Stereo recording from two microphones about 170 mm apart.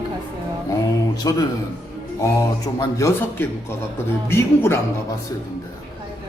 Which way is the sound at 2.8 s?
15° left (ahead or behind).